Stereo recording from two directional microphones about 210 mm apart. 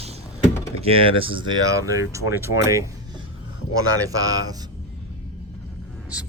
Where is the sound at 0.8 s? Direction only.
25° right (ahead or behind).